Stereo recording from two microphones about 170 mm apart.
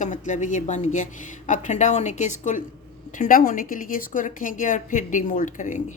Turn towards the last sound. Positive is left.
turn(degrees=50)  # may be behind; listen again after turning